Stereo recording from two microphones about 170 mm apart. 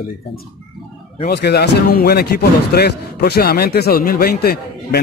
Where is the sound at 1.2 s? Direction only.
80° left.